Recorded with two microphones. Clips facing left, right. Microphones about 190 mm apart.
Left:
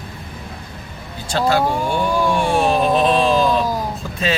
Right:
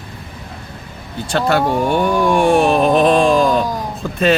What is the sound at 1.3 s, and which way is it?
Speech, 60° right (ahead or behind).